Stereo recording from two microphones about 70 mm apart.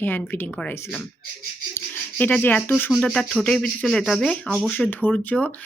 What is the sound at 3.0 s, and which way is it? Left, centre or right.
Speech, centre.